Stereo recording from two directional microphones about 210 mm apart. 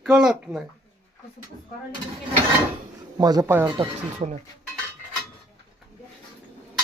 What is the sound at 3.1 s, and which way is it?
Speech, 20° right (ahead or behind).